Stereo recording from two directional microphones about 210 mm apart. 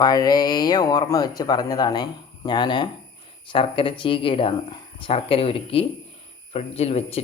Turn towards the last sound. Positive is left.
turn(degrees=30)  # may be behind; listen again after turning